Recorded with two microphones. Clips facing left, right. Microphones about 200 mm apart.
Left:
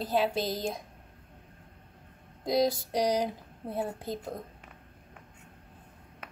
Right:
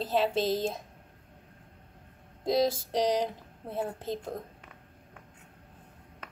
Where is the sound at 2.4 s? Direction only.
Centre (ahead or behind).